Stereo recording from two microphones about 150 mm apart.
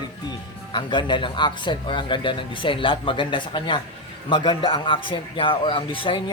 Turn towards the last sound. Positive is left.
turn(degrees=35)  # may be behind; listen again after turning